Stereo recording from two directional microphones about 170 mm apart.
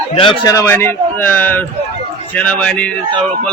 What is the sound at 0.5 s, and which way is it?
A man's voice, 15° left (ahead or behind).